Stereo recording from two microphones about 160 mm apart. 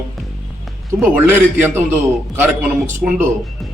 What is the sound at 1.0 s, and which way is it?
Speech, 10° right (ahead or behind).